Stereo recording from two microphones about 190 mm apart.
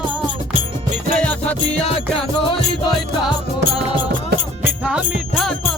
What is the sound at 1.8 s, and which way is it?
Music, 30° left (ahead or behind).